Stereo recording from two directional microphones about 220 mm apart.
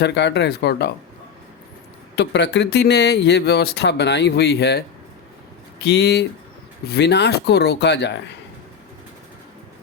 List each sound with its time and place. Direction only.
0.0 s speech: 50° left (ahead or behind)
2.1 s speech: 50° left (ahead or behind)
5.8 s speech: 50° left (ahead or behind)